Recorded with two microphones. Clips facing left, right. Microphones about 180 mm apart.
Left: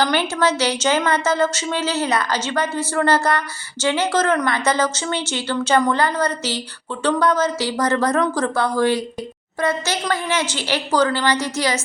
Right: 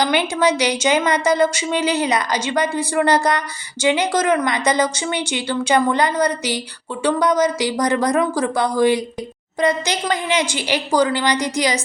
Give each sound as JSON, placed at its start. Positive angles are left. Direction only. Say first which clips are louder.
{"t": 0.0, "sound": "a woman's voice", "louder": "right 1 dB", "side_deg": -15}